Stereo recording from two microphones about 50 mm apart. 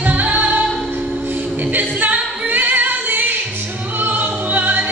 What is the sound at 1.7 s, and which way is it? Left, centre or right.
Singing, right.